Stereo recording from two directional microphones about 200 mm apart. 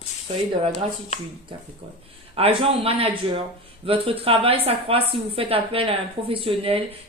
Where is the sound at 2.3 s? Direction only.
30° right (ahead or behind).